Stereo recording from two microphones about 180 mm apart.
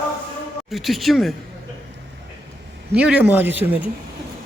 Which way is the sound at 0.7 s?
Centre (ahead or behind).